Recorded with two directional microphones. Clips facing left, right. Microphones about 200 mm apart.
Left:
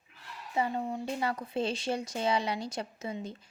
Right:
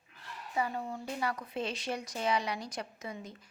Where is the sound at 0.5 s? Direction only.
20° left (ahead or behind).